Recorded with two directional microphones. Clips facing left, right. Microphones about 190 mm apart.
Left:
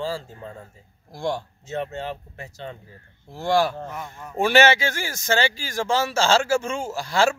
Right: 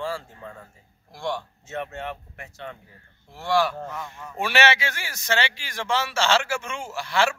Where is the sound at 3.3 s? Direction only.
40° left (ahead or behind).